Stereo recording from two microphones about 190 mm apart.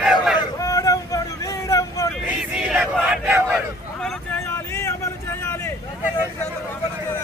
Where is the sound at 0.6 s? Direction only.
15° left (ahead or behind).